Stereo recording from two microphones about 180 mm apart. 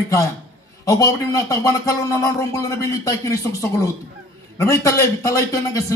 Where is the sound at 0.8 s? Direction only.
20° left (ahead or behind).